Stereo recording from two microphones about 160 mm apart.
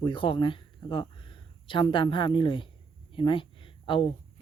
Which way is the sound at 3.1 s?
30° left (ahead or behind).